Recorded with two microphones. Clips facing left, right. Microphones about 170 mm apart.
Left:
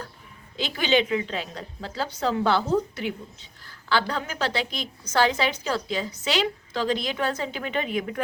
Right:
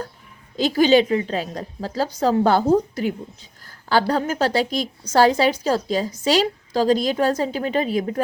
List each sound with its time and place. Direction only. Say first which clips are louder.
0.5 s a woman's voice: right 8 dB; 40° right (ahead or behind)